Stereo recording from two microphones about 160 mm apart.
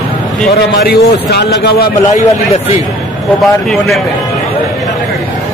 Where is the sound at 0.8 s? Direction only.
85° left.